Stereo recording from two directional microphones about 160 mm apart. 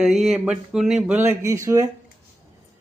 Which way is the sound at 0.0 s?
Centre (ahead or behind).